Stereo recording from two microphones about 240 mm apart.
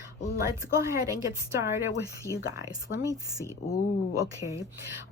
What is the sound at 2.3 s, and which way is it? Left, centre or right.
Speech, centre.